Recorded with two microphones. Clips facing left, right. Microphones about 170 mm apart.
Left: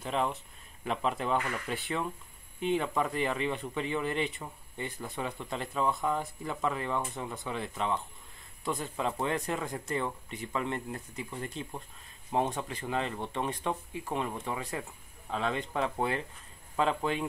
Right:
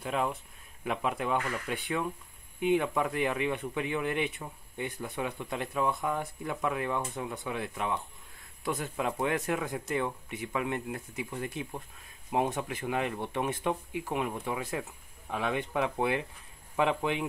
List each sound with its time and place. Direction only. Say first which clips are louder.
0.0 s speech: even; 5° right (ahead or behind)